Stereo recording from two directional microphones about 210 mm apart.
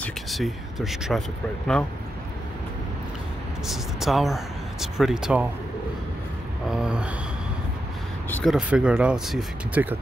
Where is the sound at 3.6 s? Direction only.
Centre (ahead or behind).